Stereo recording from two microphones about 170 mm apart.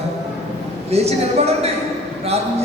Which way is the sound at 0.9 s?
40° right (ahead or behind).